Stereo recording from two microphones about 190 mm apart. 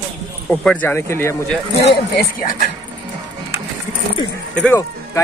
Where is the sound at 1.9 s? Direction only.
55° left (ahead or behind).